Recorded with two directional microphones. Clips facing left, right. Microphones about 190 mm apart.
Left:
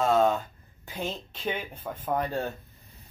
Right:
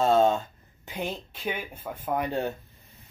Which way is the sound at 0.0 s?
30° right (ahead or behind).